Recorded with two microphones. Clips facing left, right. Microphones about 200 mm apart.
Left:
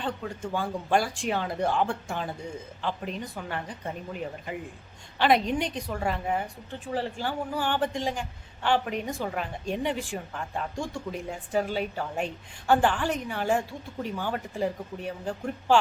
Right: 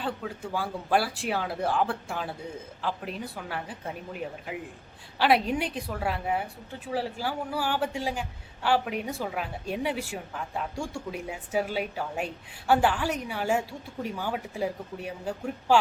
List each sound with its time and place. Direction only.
0.0 s a woman's voice: 5° right (ahead or behind)